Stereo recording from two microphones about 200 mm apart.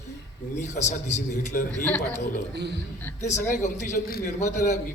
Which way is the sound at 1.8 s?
10° left (ahead or behind).